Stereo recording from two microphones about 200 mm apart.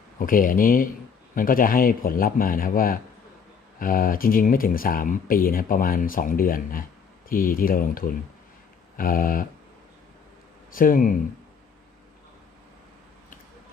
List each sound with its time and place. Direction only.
0.2 s speech: 45° left (ahead or behind)
10.7 s speech: 45° left (ahead or behind)